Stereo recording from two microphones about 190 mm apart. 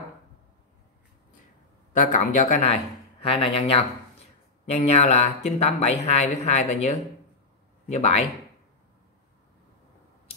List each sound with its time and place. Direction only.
2.0 s speech: 40° left (ahead or behind)